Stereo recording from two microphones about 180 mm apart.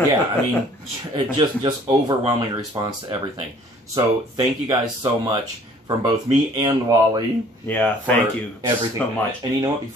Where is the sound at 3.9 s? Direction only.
20° right (ahead or behind).